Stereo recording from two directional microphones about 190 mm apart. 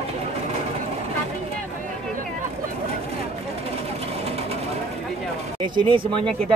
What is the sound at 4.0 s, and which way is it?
Sewing machine, 35° right (ahead or behind).